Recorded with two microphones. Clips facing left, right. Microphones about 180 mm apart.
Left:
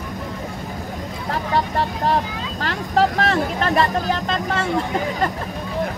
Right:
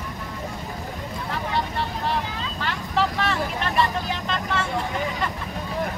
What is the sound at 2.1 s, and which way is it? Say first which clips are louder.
Vehicle: left 6 dB; 40° left (ahead or behind).